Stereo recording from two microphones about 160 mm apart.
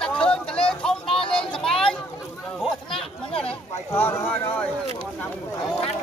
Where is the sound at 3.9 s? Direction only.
15° left (ahead or behind).